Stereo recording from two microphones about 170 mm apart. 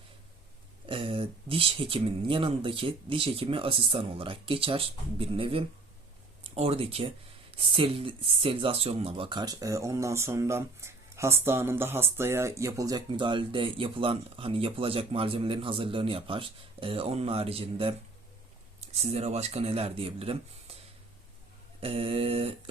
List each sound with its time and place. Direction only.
0.9 s speech: 30° right (ahead or behind)
21.8 s speech: 35° right (ahead or behind)